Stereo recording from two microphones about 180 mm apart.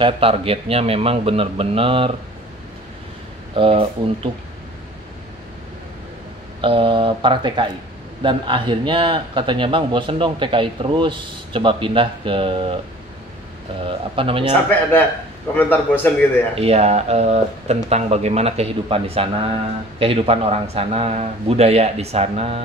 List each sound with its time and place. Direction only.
0.0 s speech: 30° right (ahead or behind)
3.5 s speech: 30° right (ahead or behind)
6.6 s a man's voice: 30° right (ahead or behind)
13.8 s a man's voice: 30° right (ahead or behind)
14.5 s speech: 10° left (ahead or behind)
16.5 s speech: 35° right (ahead or behind)